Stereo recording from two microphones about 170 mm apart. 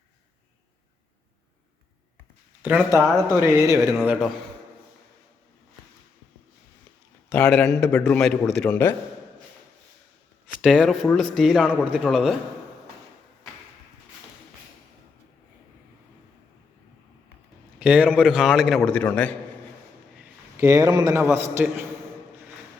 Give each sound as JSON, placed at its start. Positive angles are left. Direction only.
{"t": 2.6, "sound": "a man's voice", "side_deg": -10}
{"t": 7.3, "sound": "a man's voice", "side_deg": 5}
{"t": 10.6, "sound": "a man's voice", "side_deg": 0}
{"t": 17.7, "sound": "a man's voice", "side_deg": -5}
{"t": 20.6, "sound": "a man's voice", "side_deg": -20}